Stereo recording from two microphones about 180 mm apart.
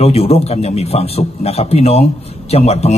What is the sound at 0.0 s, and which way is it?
A man's voice, 35° left (ahead or behind).